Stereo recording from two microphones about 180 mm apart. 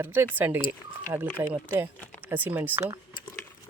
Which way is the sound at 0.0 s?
10° right (ahead or behind).